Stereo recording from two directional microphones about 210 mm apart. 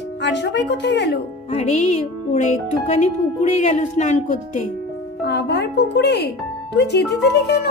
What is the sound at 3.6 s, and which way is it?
Speech, 35° left (ahead or behind).